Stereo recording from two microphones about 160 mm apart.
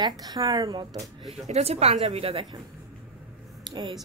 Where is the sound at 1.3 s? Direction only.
40° right (ahead or behind).